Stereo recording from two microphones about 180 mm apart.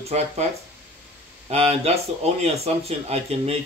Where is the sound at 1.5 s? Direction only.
35° right (ahead or behind).